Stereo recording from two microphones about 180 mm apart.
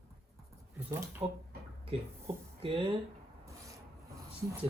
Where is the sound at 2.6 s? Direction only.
30° right (ahead or behind).